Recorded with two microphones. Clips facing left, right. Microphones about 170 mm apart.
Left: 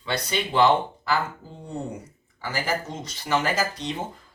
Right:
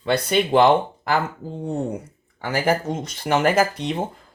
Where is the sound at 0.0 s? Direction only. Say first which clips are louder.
Right 8 dB; 50° right (ahead or behind).